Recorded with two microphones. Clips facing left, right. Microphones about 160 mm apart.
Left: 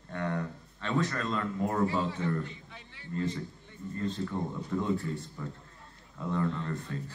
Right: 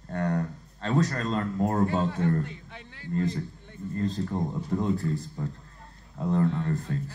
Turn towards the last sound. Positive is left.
turn(degrees=-40)  # may be behind; listen again after turning